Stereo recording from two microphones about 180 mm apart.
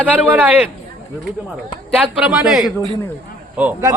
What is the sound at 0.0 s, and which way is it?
Speech, 10° right (ahead or behind).